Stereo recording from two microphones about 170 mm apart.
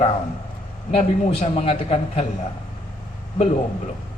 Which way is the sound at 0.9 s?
40° left (ahead or behind).